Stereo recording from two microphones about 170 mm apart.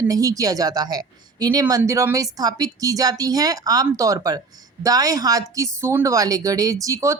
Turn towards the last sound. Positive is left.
turn(degrees=-20)  # may be behind; listen again after turning